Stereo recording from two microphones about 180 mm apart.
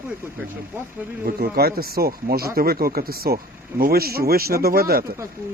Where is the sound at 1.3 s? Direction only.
60° right (ahead or behind).